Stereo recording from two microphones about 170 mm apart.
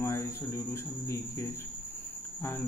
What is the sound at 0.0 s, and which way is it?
Speech, 15° left (ahead or behind).